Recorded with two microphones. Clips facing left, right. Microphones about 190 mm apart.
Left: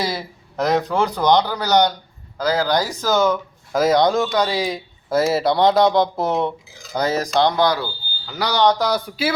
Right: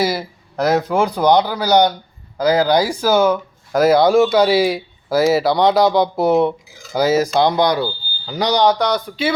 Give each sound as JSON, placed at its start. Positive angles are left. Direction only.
{"t": 0.1, "sound": "speech", "side_deg": 0}
{"t": 8.8, "sound": "speech", "side_deg": 5}